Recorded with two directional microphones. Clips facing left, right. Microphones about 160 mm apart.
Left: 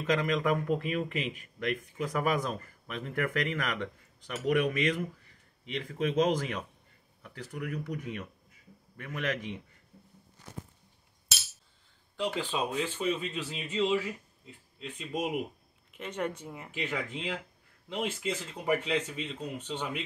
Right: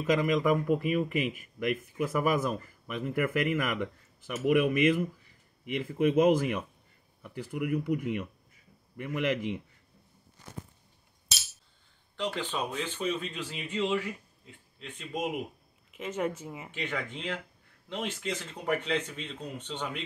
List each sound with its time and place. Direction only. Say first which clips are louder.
0.0 s speech: right 3 dB; 10° right (ahead or behind)
12.2 s speech: left 1 dB; 10° left (ahead or behind)